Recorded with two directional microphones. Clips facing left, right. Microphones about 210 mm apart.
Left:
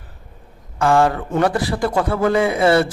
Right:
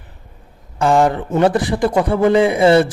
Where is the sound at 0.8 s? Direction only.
20° right (ahead or behind).